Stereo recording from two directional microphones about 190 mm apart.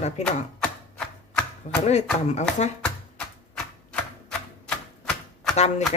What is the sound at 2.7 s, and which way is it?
Chopping, 5° left (ahead or behind).